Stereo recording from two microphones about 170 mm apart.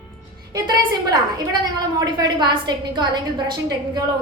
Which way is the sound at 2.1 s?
25° right (ahead or behind).